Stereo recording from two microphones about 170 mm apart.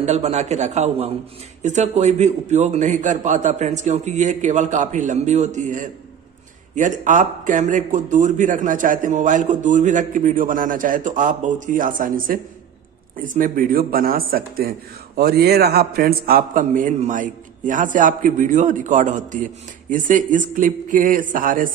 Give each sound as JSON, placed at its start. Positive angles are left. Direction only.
{"t": 0.0, "sound": "a man's voice", "side_deg": -40}